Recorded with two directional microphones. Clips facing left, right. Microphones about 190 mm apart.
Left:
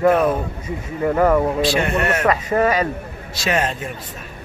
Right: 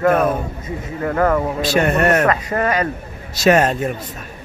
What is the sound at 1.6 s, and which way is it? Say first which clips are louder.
Speech: right 3 dB; 45° right (ahead or behind).